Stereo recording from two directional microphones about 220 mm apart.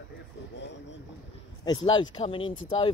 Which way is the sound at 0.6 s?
55° left (ahead or behind).